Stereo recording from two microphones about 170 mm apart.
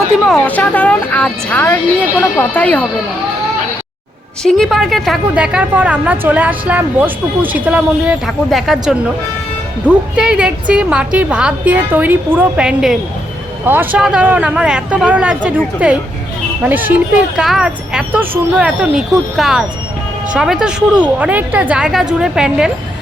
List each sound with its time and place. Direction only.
0.3 s speech: 10° left (ahead or behind)
4.4 s a woman's voice: 5° left (ahead or behind)
10.2 s a woman's voice: 5° right (ahead or behind)